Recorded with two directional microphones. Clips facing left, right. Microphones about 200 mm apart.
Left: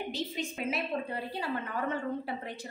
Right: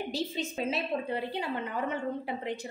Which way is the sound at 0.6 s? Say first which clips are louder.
Right 2 dB; 30° right (ahead or behind).